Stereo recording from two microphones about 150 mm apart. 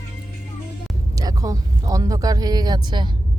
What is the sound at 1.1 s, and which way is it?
Speech, 25° right (ahead or behind).